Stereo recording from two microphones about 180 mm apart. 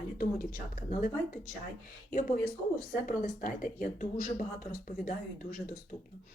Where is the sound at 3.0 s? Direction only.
50° left (ahead or behind).